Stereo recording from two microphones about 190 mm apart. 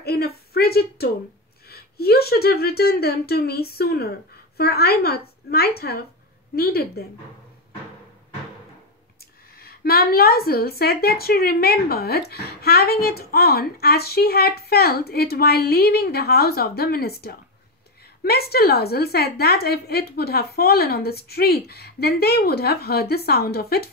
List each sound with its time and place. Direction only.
0.0 s a sound: 55° left (ahead or behind)
1.7 s a woman's voice: 55° left (ahead or behind)
9.6 s a woman's voice: 55° left (ahead or behind)